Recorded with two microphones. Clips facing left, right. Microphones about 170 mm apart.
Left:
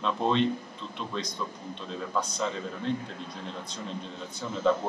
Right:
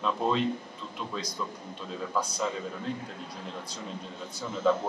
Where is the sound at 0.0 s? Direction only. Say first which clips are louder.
Left 2 dB; 5° right (ahead or behind).